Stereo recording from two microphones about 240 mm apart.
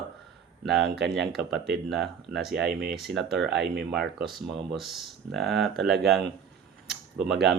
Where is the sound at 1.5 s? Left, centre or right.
Right.